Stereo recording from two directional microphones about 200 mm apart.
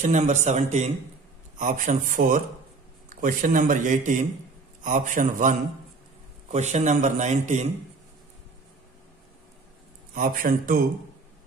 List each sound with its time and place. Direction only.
0.0 s a man's voice: 35° right (ahead or behind)
10.1 s a man's voice: 45° right (ahead or behind)